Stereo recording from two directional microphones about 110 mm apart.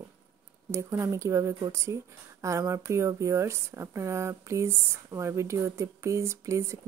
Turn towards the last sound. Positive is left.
turn(degrees=-25)  # may be behind; listen again after turning